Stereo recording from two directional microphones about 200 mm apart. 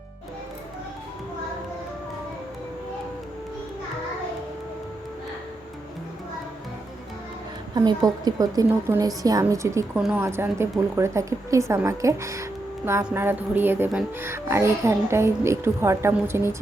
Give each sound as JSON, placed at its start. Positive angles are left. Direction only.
{"t": 7.8, "sound": "a woman's voice", "side_deg": -20}
{"t": 10.0, "sound": "a woman's voice", "side_deg": -5}